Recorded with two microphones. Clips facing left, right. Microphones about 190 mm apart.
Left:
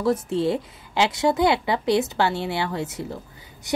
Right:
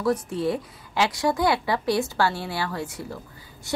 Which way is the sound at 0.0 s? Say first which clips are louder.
Left 2 dB; 25° left (ahead or behind).